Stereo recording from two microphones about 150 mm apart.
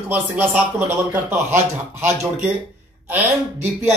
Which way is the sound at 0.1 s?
10° right (ahead or behind).